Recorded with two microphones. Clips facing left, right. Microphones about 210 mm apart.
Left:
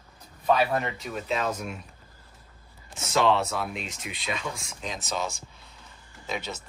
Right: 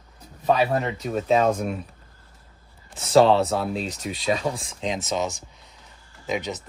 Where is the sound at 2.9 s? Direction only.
35° right (ahead or behind).